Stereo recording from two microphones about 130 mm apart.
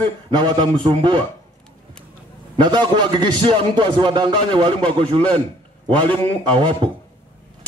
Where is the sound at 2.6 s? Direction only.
35° right (ahead or behind).